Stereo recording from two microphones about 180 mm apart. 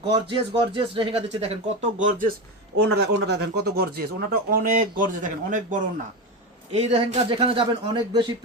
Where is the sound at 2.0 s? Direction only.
50° right (ahead or behind).